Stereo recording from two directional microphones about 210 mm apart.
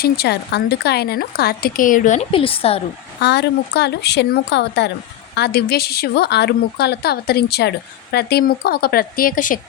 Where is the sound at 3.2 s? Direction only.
55° left (ahead or behind).